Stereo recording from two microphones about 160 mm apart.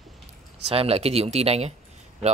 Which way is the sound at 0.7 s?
40° right (ahead or behind).